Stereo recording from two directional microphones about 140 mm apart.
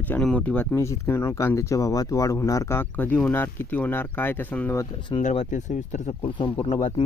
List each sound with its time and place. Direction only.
0.1 s speech: 10° left (ahead or behind)
5.1 s speech: 35° left (ahead or behind)